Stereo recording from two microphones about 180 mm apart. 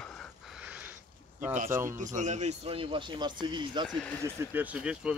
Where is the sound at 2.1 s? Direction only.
40° right (ahead or behind).